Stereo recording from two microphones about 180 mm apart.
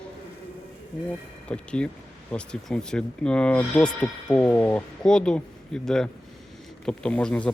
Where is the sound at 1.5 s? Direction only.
5° left (ahead or behind).